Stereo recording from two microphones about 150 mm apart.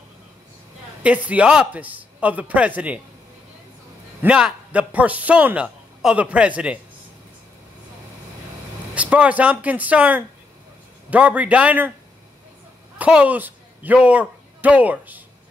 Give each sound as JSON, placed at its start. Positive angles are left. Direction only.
{"t": 1.0, "sound": "a man's voice", "side_deg": -10}
{"t": 4.2, "sound": "a man's voice", "side_deg": -5}
{"t": 8.9, "sound": "a man's voice", "side_deg": -10}
{"t": 13.0, "sound": "speech", "side_deg": -10}